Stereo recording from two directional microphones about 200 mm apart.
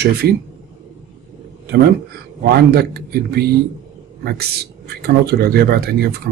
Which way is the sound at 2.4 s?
50° right (ahead or behind).